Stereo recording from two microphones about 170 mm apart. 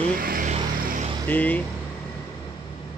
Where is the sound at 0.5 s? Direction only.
50° right (ahead or behind).